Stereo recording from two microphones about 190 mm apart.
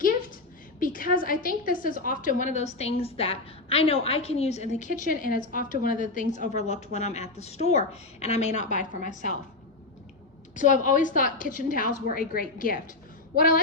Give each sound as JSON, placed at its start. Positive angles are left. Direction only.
{"t": 0.0, "sound": "a sound", "side_deg": 45}
{"t": 0.8, "sound": "a woman's voice", "side_deg": 45}
{"t": 10.5, "sound": "a woman's voice", "side_deg": 40}